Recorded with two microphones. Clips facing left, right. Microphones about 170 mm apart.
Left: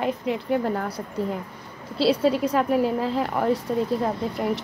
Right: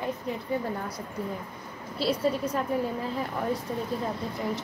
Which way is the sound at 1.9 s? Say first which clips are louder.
Left 6 dB; 85° left.